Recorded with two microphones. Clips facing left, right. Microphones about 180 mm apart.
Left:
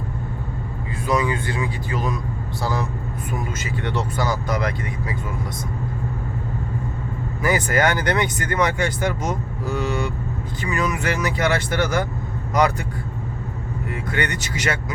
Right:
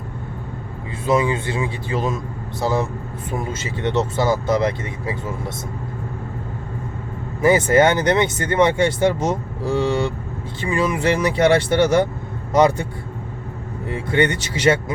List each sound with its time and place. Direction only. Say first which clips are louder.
1.0 s speech: right 3 dB; 25° right (ahead or behind)
7.4 s speech: right 6 dB; 25° right (ahead or behind)